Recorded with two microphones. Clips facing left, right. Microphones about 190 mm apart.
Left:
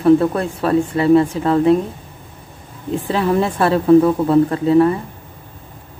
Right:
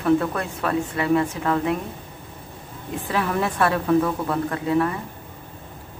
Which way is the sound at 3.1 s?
30° left (ahead or behind).